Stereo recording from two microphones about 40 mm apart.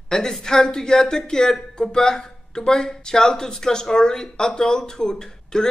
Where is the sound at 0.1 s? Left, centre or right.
Centre.